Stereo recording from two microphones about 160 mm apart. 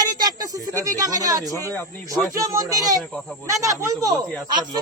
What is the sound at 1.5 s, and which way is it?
Speech, 15° left (ahead or behind).